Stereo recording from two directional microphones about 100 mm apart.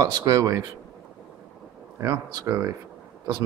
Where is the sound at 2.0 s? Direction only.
40° right (ahead or behind).